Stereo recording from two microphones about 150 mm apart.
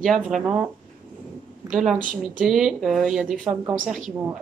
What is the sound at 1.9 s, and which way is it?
Speech, 60° right (ahead or behind).